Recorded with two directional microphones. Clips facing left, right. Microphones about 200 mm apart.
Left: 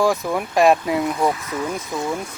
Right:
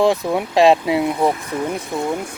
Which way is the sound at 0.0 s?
20° right (ahead or behind).